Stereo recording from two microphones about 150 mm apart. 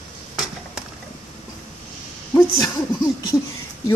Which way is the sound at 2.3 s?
30° left (ahead or behind).